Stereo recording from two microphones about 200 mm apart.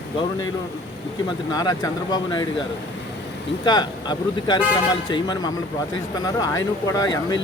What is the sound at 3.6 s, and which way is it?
Speech, 20° left (ahead or behind).